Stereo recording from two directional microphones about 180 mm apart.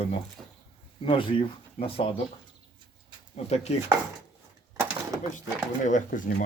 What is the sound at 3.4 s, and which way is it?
Speech, 35° left (ahead or behind).